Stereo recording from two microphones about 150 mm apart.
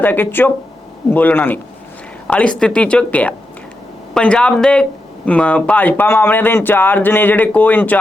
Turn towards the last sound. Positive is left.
turn(degrees=10)  # may be behind; listen again after turning